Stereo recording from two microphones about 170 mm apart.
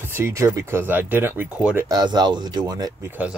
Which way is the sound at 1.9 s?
25° right (ahead or behind).